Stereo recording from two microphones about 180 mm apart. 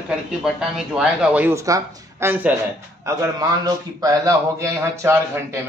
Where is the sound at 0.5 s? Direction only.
Centre (ahead or behind).